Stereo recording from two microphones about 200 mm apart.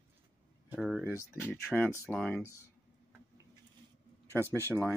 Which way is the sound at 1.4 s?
10° left (ahead or behind).